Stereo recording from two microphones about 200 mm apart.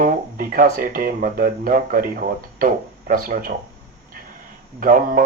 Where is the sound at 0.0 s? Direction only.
45° right (ahead or behind).